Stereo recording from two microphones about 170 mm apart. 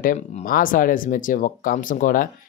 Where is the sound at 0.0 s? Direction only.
50° left (ahead or behind).